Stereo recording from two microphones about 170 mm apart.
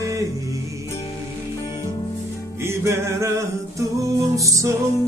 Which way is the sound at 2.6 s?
15° right (ahead or behind).